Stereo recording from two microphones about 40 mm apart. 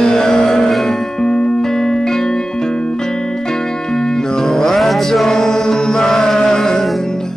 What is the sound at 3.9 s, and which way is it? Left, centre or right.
Music, centre.